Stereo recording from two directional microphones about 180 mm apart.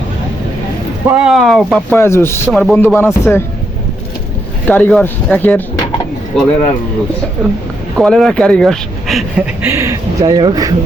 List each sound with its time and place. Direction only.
1.1 s speech: 5° right (ahead or behind)
2.0 s speech: 15° left (ahead or behind)
2.5 s speech: 5° left (ahead or behind)
4.6 s speech: 10° left (ahead or behind)
7.9 s speech: centre (ahead or behind)
9.6 s speech: 15° right (ahead or behind)